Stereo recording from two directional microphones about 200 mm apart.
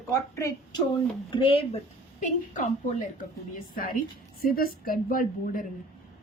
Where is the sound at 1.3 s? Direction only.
25° left (ahead or behind).